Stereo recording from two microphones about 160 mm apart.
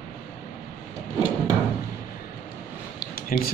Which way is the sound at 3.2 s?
60° left (ahead or behind).